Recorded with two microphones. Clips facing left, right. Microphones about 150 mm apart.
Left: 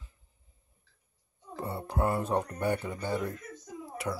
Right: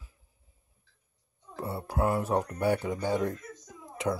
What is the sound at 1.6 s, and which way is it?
Speech, 5° right (ahead or behind).